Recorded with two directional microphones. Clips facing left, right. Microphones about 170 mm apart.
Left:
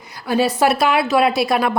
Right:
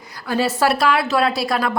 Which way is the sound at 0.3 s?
15° left (ahead or behind).